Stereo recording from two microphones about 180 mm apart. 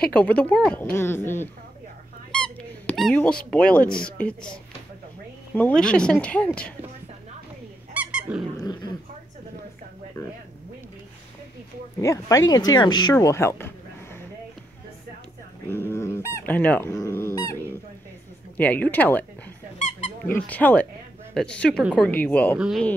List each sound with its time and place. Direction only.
0.0 s speech: 5° left (ahead or behind)
7.9 s squeak: 5° right (ahead or behind)
8.5 s speech: 20° left (ahead or behind)
12.0 s speech: 15° left (ahead or behind)
15.7 s speech: 15° left (ahead or behind)
20.3 s a woman's voice: 10° left (ahead or behind)
22.1 s a woman's voice: 10° left (ahead or behind)